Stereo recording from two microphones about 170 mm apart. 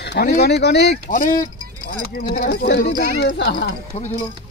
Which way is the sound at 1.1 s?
55° left (ahead or behind).